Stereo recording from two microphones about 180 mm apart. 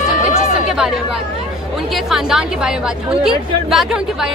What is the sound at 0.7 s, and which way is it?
Chatter, 5° right (ahead or behind).